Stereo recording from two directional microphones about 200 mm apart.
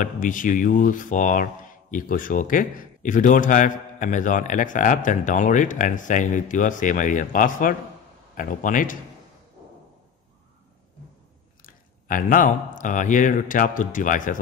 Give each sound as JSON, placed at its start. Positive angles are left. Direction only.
{"t": 0.0, "sound": "speech", "side_deg": 40}
{"t": 11.6, "sound": "speech", "side_deg": 45}